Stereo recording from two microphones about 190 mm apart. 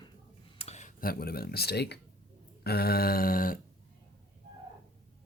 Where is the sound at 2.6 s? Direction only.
55° left (ahead or behind).